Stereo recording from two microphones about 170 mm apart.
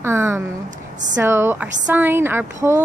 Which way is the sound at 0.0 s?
15° right (ahead or behind).